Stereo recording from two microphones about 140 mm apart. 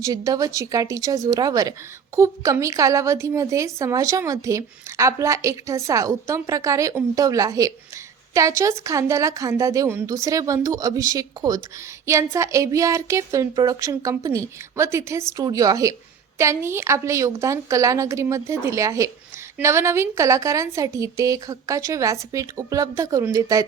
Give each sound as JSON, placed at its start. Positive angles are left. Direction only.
{"t": 0.0, "sound": "speech", "side_deg": -25}